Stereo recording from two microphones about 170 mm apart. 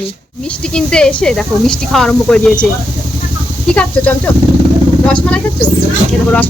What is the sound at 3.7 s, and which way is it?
A woman's voice, 10° left (ahead or behind).